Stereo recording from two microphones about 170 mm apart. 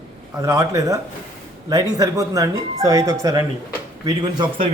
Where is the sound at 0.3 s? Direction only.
20° right (ahead or behind).